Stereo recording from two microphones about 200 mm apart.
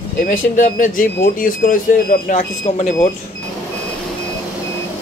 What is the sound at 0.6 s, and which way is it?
Speech, 45° left (ahead or behind).